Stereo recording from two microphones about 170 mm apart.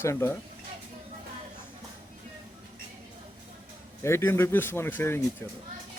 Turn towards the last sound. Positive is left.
turn(degrees=10)  # may be behind; listen again after turning